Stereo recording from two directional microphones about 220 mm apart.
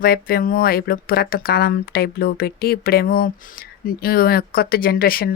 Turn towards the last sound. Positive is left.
turn(degrees=40)  # may be behind; listen again after turning